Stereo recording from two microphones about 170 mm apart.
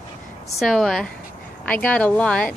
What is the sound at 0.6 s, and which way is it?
A woman's voice, centre (ahead or behind).